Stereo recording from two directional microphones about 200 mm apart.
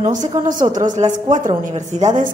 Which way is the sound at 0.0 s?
40° right (ahead or behind).